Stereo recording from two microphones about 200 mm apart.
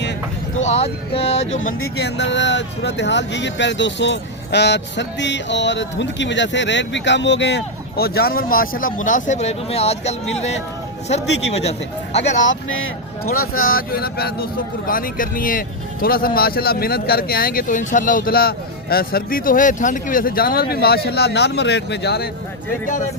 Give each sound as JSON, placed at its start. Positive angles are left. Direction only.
{"t": 0.6, "sound": "speech", "side_deg": 30}
{"t": 2.0, "sound": "speech", "side_deg": 60}
{"t": 12.4, "sound": "speech", "side_deg": 75}
{"t": 13.3, "sound": "speech", "side_deg": 45}